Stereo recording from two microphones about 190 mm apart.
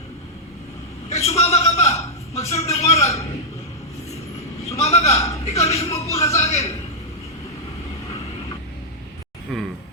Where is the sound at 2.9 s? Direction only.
15° left (ahead or behind).